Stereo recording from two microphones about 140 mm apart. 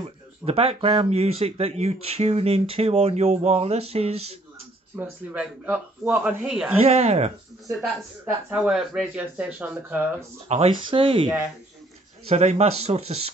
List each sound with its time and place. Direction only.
0.5 s speech: 45° right (ahead or behind)
4.9 s speech: 10° right (ahead or behind)
6.8 s speech: 50° right (ahead or behind)
8.5 s speech: 5° right (ahead or behind)
10.5 s speech: 40° right (ahead or behind)
12.3 s speech: 50° right (ahead or behind)